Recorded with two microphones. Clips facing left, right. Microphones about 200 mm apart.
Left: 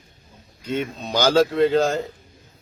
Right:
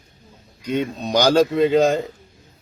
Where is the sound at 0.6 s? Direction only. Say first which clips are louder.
Right 3 dB; 15° right (ahead or behind).